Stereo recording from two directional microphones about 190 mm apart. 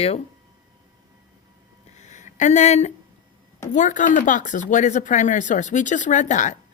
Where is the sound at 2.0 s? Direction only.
40° left (ahead or behind).